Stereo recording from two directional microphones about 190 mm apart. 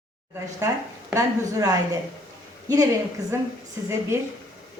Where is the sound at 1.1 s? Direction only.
20° right (ahead or behind).